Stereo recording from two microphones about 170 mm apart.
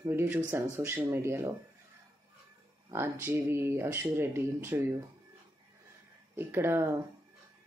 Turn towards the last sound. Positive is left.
turn(degrees=-15)  # may be behind; listen again after turning